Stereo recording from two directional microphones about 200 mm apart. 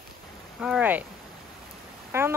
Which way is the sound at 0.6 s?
5° right (ahead or behind).